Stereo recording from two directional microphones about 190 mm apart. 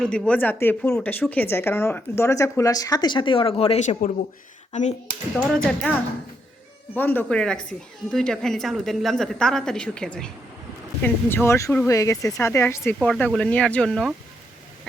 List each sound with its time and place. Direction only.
0.0 s speech: 5° left (ahead or behind); by 4.9 s 40° left (ahead or behind)
5.4 s a woman's voice: 5° left (ahead or behind)
6.9 s a woman's voice: 10° left (ahead or behind)